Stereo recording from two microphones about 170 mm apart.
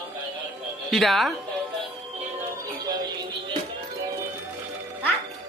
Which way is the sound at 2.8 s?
25° right (ahead or behind).